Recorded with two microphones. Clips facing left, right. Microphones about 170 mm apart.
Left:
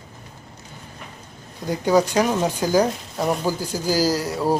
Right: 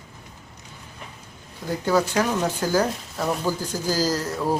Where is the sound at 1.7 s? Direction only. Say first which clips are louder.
Left 3 dB; 15° left (ahead or behind).